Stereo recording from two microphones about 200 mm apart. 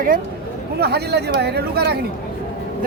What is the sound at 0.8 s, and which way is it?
Speech, 55° right (ahead or behind).